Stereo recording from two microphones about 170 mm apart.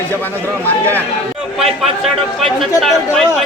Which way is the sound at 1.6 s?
Centre (ahead or behind).